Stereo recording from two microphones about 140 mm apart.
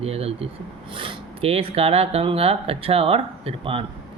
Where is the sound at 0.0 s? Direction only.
45° right (ahead or behind).